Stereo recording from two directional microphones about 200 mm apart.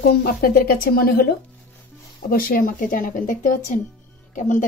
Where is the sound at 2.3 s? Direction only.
45° left (ahead or behind).